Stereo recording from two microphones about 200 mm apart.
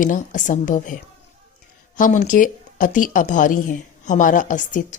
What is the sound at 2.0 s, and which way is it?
A woman's voice, 40° left (ahead or behind).